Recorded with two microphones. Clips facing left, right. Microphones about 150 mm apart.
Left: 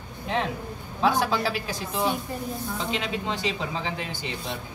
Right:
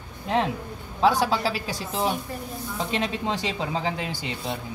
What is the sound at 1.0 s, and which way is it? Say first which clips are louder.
Speech: right 2 dB; 30° right (ahead or behind).